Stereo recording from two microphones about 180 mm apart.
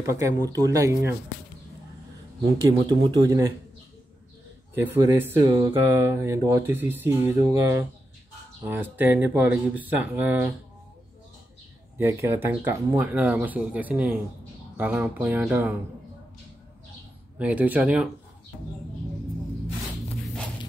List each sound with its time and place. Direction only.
0.0 s speech: 15° right (ahead or behind)
2.9 s speech: 20° right (ahead or behind)
4.7 s speech: 15° right (ahead or behind)
12.0 s speech: 10° right (ahead or behind)
17.4 s speech: 10° right (ahead or behind)